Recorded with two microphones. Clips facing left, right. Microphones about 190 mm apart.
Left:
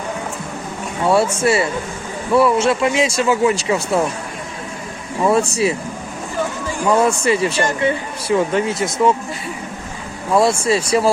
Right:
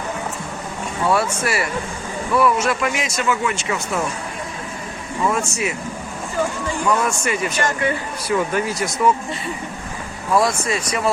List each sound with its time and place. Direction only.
1.0 s speech: 30° left (ahead or behind)
5.2 s speech: 35° left (ahead or behind)
7.3 s speech: 30° left (ahead or behind)
10.3 s speech: 30° left (ahead or behind)